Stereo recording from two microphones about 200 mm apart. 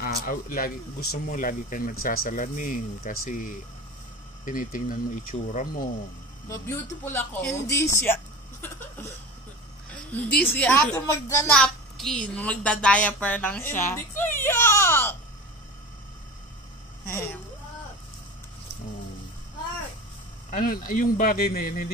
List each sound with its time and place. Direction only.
0.0 s speech: 45° left (ahead or behind)
6.5 s speech: 15° left (ahead or behind)
8.0 s a sound: 10° left (ahead or behind)
10.1 s speech: 10° left (ahead or behind)
11.5 s a woman's voice: 5° left (ahead or behind)
17.0 s speech: 10° left (ahead or behind)
20.4 s speech: 40° left (ahead or behind)